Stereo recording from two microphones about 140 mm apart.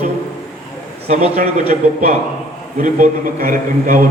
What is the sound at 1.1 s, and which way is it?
Speech, 50° right (ahead or behind).